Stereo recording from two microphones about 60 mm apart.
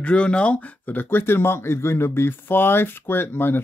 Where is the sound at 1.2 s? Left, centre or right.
Left.